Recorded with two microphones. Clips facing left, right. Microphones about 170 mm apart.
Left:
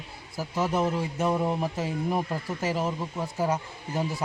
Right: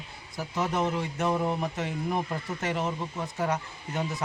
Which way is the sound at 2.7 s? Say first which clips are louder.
Left 1 dB; 5° left (ahead or behind).